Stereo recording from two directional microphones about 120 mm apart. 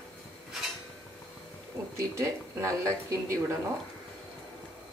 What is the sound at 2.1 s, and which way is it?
Speech, 25° right (ahead or behind).